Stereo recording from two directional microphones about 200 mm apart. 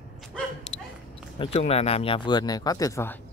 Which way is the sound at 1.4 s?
30° left (ahead or behind).